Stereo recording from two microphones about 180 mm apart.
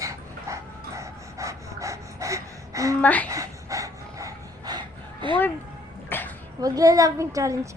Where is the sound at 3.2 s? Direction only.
20° right (ahead or behind).